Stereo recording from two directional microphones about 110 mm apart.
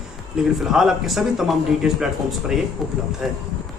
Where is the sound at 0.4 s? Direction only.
5° right (ahead or behind).